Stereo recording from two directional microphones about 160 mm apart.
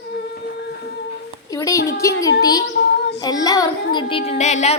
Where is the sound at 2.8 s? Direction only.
90° left.